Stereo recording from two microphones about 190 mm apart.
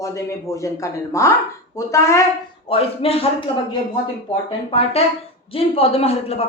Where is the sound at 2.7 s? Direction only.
30° left (ahead or behind).